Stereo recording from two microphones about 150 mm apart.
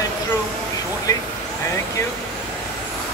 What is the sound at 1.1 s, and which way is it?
Speech, 25° left (ahead or behind).